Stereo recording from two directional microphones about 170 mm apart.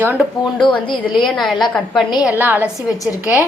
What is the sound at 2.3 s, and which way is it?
Speech, 10° right (ahead or behind).